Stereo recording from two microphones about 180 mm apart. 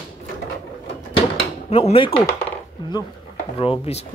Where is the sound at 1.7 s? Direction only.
30° left (ahead or behind).